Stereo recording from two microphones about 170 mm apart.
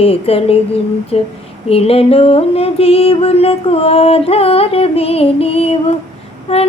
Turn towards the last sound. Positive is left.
turn(degrees=35)  # may be behind; listen again after turning